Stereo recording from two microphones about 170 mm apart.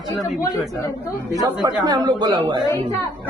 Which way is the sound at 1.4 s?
25° right (ahead or behind).